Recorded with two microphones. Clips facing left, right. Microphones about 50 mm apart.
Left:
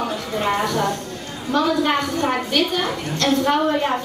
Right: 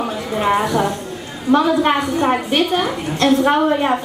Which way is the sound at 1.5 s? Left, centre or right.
Right.